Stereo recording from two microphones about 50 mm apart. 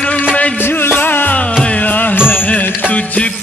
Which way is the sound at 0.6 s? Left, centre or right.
Left.